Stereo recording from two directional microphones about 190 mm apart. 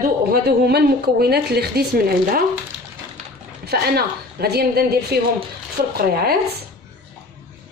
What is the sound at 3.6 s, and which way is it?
A woman's voice, 55° right (ahead or behind).